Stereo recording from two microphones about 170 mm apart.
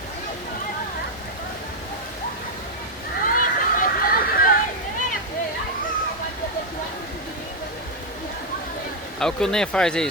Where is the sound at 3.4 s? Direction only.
50° left (ahead or behind).